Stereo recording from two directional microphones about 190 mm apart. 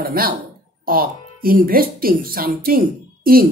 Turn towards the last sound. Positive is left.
turn(degrees=-50)  # may be behind; listen again after turning